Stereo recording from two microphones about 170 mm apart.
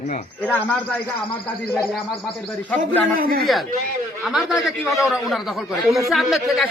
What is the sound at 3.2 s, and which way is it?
Speech, 60° right (ahead or behind).